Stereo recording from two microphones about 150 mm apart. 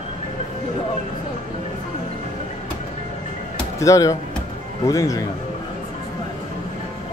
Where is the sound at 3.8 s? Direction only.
20° left (ahead or behind).